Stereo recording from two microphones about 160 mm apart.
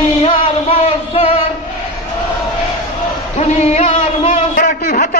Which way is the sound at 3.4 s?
45° left (ahead or behind).